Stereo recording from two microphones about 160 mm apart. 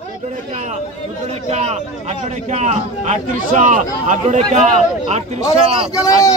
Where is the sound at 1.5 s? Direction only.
45° right (ahead or behind).